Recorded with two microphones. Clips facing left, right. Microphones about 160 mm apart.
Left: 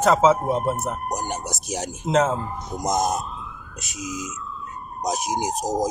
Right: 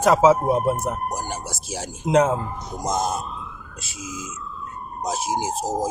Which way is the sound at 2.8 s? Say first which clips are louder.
Left 1 dB; 20° left (ahead or behind).